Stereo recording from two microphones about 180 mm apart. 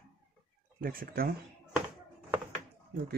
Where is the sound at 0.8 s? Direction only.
55° right (ahead or behind).